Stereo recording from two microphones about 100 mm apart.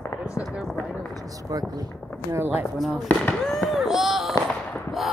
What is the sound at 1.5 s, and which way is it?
Speech, 40° right (ahead or behind).